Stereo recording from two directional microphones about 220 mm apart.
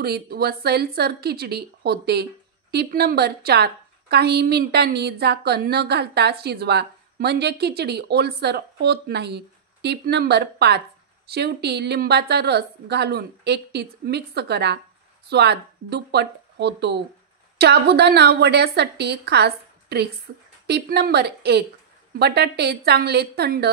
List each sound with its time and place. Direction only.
0.0 s a woman's voice: 45° right (ahead or behind)